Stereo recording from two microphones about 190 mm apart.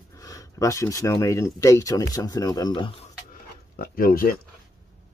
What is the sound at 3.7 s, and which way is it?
Speech, 50° left (ahead or behind).